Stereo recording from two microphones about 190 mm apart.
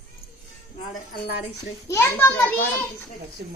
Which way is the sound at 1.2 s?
60° left (ahead or behind).